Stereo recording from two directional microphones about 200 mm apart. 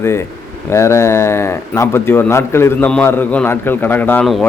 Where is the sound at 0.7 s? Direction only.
15° left (ahead or behind).